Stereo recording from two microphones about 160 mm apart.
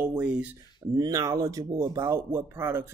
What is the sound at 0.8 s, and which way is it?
Speech, 25° right (ahead or behind).